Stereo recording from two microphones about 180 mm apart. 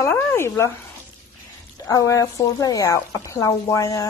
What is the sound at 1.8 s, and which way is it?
Speech, 20° left (ahead or behind).